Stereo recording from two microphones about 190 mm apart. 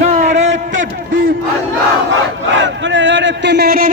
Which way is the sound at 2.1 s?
75° right (ahead or behind).